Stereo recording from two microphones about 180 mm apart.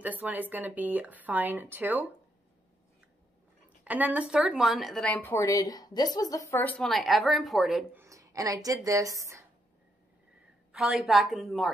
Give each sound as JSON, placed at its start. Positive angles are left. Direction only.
{"t": 0.0, "sound": "speech", "side_deg": -10}
{"t": 3.8, "sound": "a woman's voice", "side_deg": -10}
{"t": 8.0, "sound": "a sound", "side_deg": -15}
{"t": 8.6, "sound": "speech", "side_deg": -20}
{"t": 10.7, "sound": "a woman's voice", "side_deg": -5}